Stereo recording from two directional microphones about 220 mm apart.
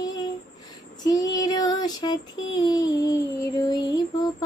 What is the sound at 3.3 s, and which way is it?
Child singing, 15° left (ahead or behind).